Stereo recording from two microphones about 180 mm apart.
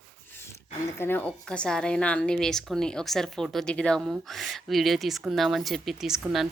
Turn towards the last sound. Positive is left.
turn(degrees=0)  # may be behind; listen again after turning